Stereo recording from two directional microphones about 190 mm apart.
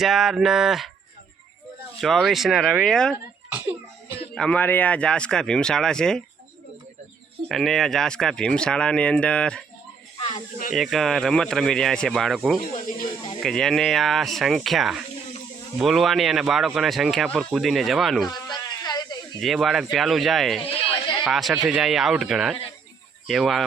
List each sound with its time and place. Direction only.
0.0 s speech: centre (ahead or behind)
2.0 s speech: centre (ahead or behind)
4.4 s speech: 5° left (ahead or behind)
7.4 s speech: centre (ahead or behind)
10.2 s snake: 30° left (ahead or behind)
10.8 s speech: centre (ahead or behind)
18.3 s a sound: 20° left (ahead or behind)
19.4 s speech: centre (ahead or behind)
20.6 s a sound: 30° left (ahead or behind)
21.2 s speech: centre (ahead or behind)